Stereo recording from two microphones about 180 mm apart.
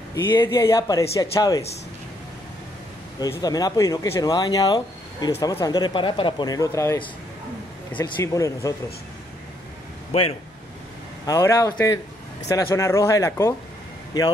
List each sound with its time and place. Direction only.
0.1 s speech: 15° left (ahead or behind)
3.2 s speech: 20° left (ahead or behind)
10.1 s speech: 35° left (ahead or behind)
11.2 s speech: 15° left (ahead or behind)